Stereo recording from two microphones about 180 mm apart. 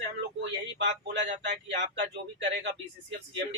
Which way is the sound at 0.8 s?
75° right (ahead or behind).